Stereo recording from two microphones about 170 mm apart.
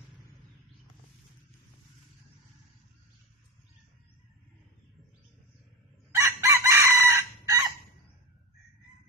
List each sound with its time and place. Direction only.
6.1 s chicken: 15° right (ahead or behind)